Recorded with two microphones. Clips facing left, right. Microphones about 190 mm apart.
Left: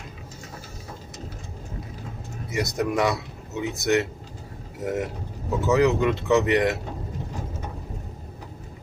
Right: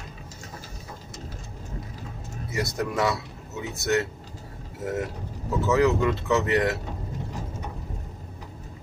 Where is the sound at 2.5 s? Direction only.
20° left (ahead or behind).